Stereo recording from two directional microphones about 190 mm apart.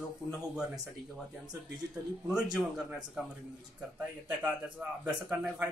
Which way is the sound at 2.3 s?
5° right (ahead or behind).